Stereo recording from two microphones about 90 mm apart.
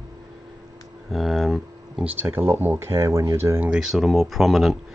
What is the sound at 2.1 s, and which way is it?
Speech, 25° right (ahead or behind).